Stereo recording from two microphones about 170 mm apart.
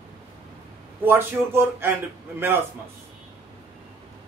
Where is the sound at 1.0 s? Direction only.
15° right (ahead or behind).